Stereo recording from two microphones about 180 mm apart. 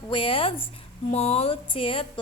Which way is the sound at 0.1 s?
30° left (ahead or behind).